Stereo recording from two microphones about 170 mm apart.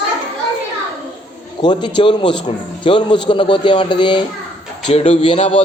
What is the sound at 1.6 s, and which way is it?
A man's voice, 25° left (ahead or behind).